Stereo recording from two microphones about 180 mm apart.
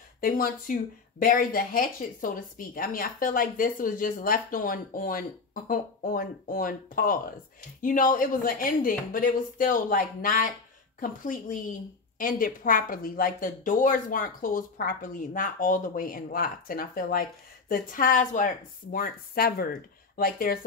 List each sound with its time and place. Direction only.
0.2 s speech: 50° left (ahead or behind)